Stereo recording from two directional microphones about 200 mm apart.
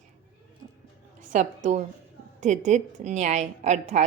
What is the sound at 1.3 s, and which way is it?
A woman's voice, 35° right (ahead or behind).